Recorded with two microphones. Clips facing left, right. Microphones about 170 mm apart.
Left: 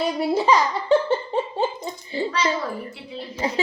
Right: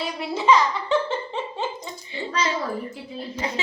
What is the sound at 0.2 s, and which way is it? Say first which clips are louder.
Giggle: right 1 dB; 35° left (ahead or behind).